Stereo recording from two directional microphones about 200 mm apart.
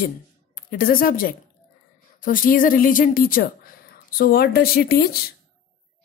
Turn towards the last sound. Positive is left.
turn(degrees=50)  # may be behind; listen again after turning